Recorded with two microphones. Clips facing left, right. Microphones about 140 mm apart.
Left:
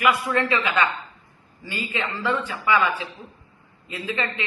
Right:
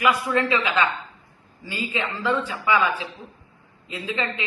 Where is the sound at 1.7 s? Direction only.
15° right (ahead or behind).